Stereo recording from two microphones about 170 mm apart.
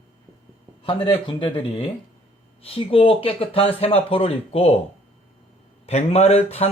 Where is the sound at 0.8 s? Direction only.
30° left (ahead or behind).